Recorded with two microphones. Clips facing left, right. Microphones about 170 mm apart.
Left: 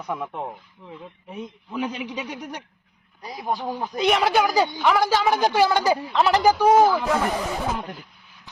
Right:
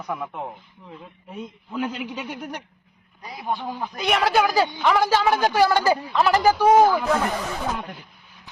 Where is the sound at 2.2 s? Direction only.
10° right (ahead or behind).